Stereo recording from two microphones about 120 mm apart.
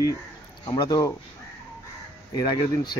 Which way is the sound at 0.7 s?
35° left (ahead or behind).